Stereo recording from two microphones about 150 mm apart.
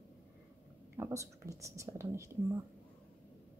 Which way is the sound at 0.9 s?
20° right (ahead or behind).